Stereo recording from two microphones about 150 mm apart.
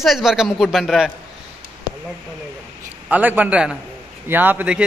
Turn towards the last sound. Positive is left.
turn(degrees=-10)  # may be behind; listen again after turning